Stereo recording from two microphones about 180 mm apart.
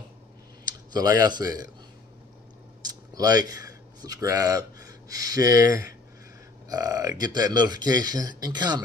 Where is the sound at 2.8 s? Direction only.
20° right (ahead or behind).